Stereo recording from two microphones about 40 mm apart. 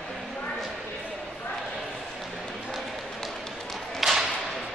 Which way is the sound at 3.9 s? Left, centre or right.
Centre.